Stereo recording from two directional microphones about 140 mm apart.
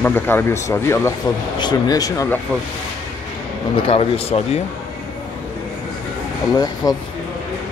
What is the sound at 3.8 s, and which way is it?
Speech, 45° left (ahead or behind).